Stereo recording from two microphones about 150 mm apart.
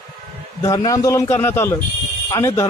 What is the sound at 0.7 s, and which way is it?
A man's voice, 25° left (ahead or behind).